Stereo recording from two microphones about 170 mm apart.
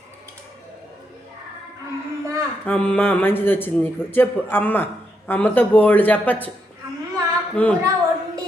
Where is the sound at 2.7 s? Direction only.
10° left (ahead or behind).